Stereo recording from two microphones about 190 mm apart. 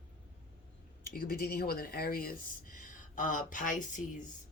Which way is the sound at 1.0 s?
50° left (ahead or behind).